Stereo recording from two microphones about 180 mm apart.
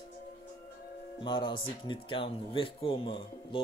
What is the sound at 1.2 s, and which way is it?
Speech, 25° left (ahead or behind).